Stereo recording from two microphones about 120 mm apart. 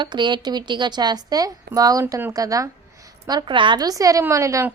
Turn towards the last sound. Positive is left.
turn(degrees=-25)  # may be behind; listen again after turning